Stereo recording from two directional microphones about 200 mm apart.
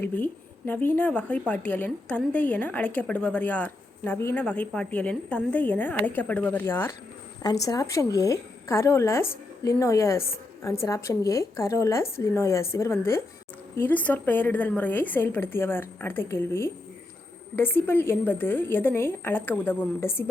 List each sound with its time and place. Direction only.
0.0 s a woman's voice: 10° left (ahead or behind)